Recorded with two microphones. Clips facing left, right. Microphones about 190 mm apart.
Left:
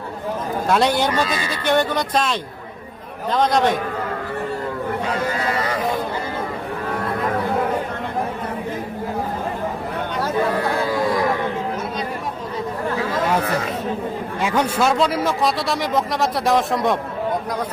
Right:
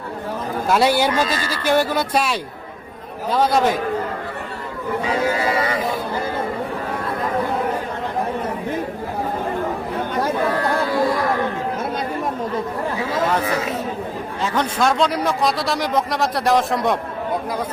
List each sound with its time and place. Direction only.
0.7 s a man's voice: 5° right (ahead or behind)
3.3 s a man's voice: 5° right (ahead or behind)
5.0 s speech: centre (ahead or behind)
14.4 s a man's voice: 10° left (ahead or behind)